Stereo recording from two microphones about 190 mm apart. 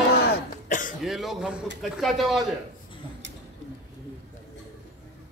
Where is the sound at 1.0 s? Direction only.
Centre (ahead or behind).